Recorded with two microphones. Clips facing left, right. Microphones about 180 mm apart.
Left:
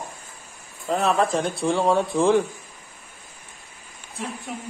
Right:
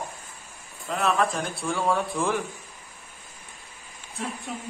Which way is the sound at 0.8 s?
35° left (ahead or behind).